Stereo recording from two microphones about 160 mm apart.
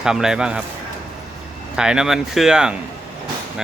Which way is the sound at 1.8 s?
5° right (ahead or behind).